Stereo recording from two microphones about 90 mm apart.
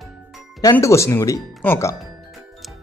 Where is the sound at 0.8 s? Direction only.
30° left (ahead or behind).